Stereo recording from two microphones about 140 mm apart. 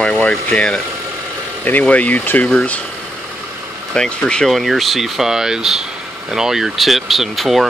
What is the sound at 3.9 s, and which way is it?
Speech, 5° left (ahead or behind).